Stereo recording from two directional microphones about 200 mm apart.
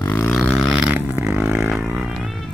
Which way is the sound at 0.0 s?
10° left (ahead or behind).